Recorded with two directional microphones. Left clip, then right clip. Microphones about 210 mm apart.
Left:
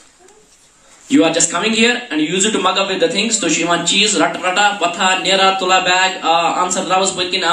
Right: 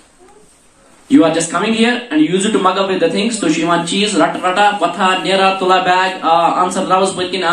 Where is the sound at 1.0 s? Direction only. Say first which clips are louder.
Right 2 dB; 30° left (ahead or behind).